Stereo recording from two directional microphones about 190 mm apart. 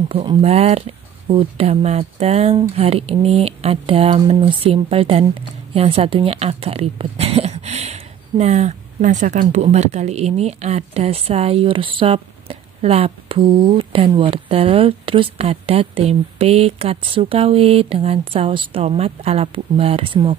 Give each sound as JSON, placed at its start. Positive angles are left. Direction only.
{"t": 0.1, "sound": "a woman's voice", "side_deg": -25}